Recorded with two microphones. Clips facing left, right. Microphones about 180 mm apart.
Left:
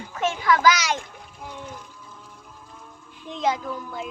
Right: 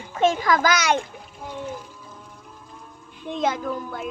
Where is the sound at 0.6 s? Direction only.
55° right (ahead or behind).